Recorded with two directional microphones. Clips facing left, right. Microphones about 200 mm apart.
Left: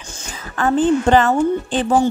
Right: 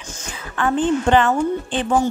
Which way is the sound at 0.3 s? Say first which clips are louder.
Left 3 dB; 40° left (ahead or behind).